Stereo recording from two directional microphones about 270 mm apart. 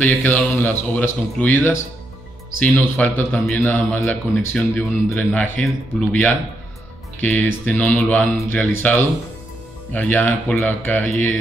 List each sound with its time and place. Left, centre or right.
0.0 s a man's voice: centre